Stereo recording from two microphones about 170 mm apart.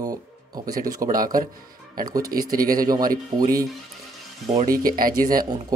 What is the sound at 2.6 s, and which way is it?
Speech, 55° right (ahead or behind).